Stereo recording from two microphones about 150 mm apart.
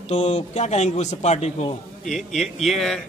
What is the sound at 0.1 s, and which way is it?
A man's voice, 50° left (ahead or behind).